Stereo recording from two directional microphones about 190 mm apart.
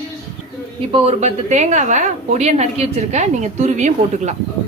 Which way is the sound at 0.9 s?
30° right (ahead or behind).